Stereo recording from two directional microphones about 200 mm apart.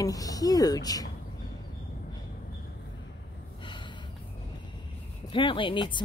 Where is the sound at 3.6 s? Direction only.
25° left (ahead or behind).